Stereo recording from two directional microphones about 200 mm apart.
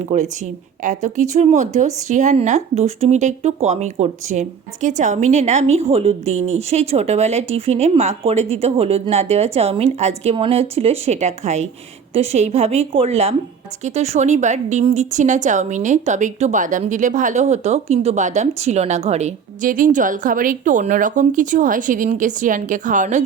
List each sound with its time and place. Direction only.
0.0 s a woman's voice: 35° right (ahead or behind)